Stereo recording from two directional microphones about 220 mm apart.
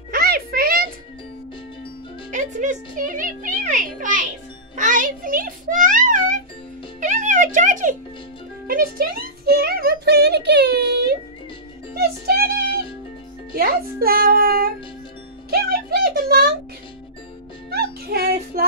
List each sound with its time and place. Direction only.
0.1 s music: 45° right (ahead or behind)
2.3 s a child's voice: 35° right (ahead or behind)
7.0 s music: 35° right (ahead or behind)
8.6 s speech: 40° right (ahead or behind)
12.0 s music: 45° right (ahead or behind)
13.5 s speech: 45° right (ahead or behind)
15.5 s a sound: 45° right (ahead or behind)
17.6 s music: 45° right (ahead or behind)